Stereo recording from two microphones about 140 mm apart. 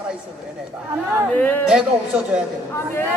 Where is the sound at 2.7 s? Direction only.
15° left (ahead or behind).